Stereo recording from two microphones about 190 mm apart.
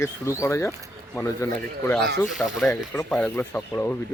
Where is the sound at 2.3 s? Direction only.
5° left (ahead or behind).